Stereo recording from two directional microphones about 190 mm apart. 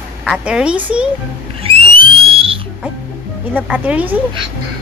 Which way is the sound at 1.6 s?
30° right (ahead or behind).